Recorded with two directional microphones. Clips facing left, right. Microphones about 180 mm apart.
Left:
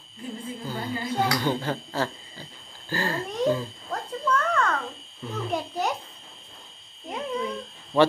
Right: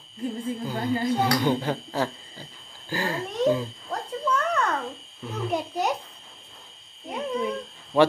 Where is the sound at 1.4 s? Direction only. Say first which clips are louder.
Right 2 dB; 15° right (ahead or behind).